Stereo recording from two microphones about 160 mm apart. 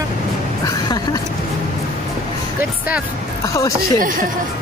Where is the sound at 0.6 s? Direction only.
20° left (ahead or behind).